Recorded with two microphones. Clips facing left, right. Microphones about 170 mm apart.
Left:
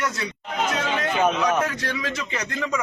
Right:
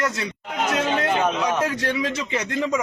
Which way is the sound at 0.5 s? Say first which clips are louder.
Right 2 dB; 25° right (ahead or behind).